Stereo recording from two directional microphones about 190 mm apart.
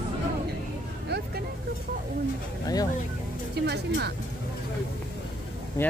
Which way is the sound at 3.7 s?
60° right (ahead or behind).